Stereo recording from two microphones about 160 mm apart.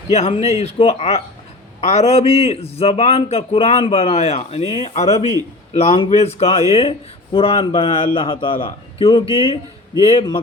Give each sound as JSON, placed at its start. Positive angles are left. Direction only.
{"t": 0.1, "sound": "a man's voice", "side_deg": 40}